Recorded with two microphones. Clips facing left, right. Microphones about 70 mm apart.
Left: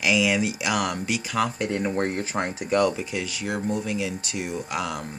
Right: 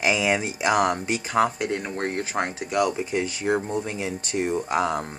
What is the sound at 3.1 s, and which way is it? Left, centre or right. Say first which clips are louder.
Speech: right 5 dB; right.